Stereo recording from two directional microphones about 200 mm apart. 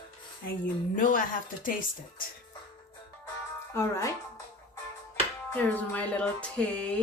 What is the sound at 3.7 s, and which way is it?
Speech, 15° left (ahead or behind).